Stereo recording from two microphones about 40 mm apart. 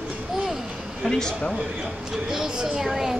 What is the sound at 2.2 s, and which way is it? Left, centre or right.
Speech, centre.